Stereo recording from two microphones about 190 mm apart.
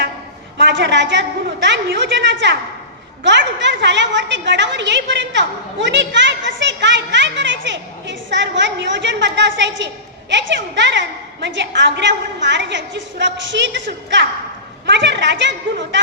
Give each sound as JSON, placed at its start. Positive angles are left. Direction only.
{"t": 0.6, "sound": "a woman's voice", "side_deg": -70}
{"t": 14.8, "sound": "a woman's voice", "side_deg": -70}